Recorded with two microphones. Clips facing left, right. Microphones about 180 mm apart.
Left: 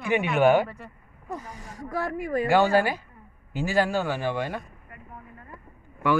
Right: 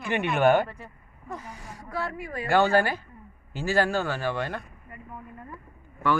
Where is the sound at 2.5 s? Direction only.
10° left (ahead or behind).